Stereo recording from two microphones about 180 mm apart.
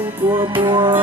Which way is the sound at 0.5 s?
25° right (ahead or behind).